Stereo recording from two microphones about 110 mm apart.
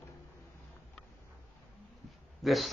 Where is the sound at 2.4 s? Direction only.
Centre (ahead or behind).